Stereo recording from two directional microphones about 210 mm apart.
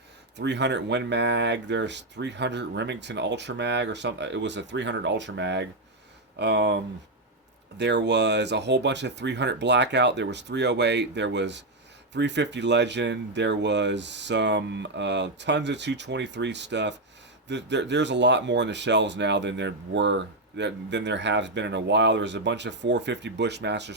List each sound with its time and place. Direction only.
0.3 s speech: 55° right (ahead or behind)